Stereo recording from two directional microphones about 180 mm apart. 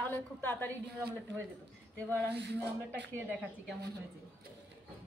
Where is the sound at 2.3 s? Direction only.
70° right (ahead or behind).